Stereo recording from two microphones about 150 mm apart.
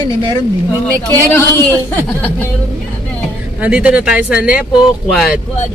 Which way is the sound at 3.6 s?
10° right (ahead or behind).